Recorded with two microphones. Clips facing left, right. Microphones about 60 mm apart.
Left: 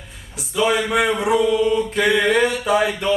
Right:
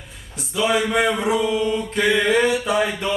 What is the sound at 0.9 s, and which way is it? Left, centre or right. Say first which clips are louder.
Mantra: left 1 dB; centre.